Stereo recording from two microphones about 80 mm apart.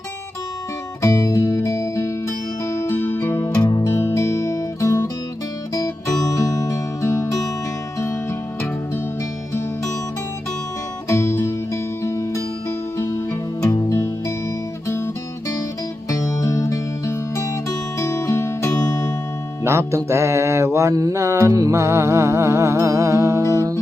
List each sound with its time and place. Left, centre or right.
1.0 s music: left
6.3 s music: left
11.1 s music: left
13.9 s music: left
16.0 s music: left
18.7 s music: left
19.6 s music: right
20.1 s mantra: right
23.5 s music: right